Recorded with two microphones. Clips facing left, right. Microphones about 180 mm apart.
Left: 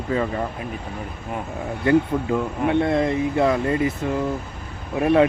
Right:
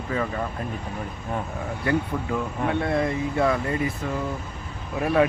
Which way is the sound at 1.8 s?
20° left (ahead or behind).